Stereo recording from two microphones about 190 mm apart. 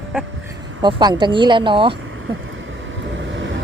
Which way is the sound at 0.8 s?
25° right (ahead or behind).